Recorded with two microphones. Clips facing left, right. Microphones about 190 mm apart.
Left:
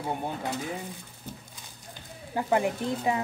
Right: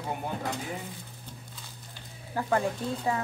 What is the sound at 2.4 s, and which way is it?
Speech, 15° left (ahead or behind).